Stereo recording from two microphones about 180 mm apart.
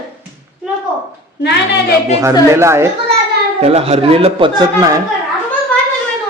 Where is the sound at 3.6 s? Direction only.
35° right (ahead or behind).